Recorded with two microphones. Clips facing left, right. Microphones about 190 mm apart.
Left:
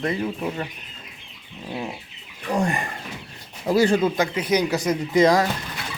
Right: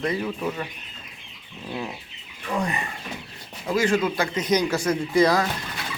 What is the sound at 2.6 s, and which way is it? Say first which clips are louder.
Speech: left 4 dB; 45° left (ahead or behind).